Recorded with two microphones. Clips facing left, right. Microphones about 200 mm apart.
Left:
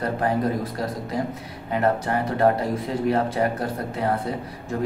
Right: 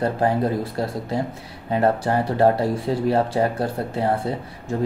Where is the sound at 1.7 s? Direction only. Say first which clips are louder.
Right 3 dB; 30° right (ahead or behind).